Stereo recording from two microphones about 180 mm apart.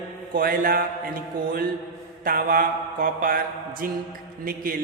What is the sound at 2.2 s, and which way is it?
A man's voice, 55° right (ahead or behind).